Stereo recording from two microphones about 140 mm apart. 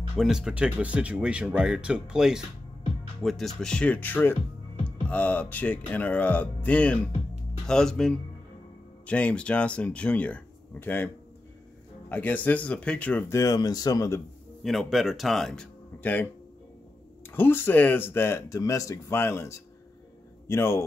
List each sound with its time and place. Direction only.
0.1 s speech: 5° right (ahead or behind); by 11.1 s 15° left (ahead or behind)
12.1 s speech: 10° left (ahead or behind)
13.3 s speech: 25° left (ahead or behind)
14.6 s speech: centre (ahead or behind)
17.3 s speech: 15° left (ahead or behind)